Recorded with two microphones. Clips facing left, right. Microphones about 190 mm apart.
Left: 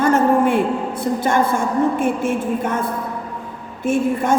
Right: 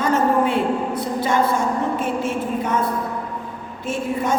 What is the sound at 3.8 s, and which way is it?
Speech, 50° left (ahead or behind).